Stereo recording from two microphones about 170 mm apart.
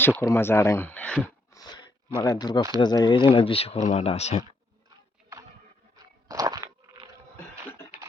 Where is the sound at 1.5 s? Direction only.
25° left (ahead or behind).